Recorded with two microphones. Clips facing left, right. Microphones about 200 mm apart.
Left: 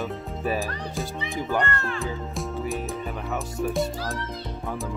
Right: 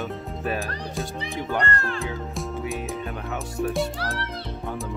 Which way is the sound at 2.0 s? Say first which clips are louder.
Even; centre (ahead or behind).